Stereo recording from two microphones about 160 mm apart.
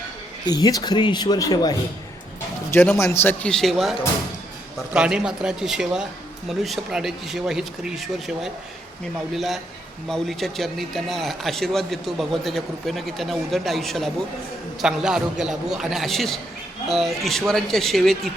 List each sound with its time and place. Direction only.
0.4 s speech: 25° left (ahead or behind)
3.0 s speech: 15° left (ahead or behind)
4.9 s speech: 5° right (ahead or behind)